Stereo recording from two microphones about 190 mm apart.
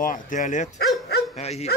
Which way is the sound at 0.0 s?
45° left (ahead or behind).